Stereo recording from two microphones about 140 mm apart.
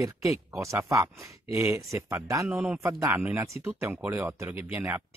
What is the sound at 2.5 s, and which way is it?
Speech, 5° right (ahead or behind).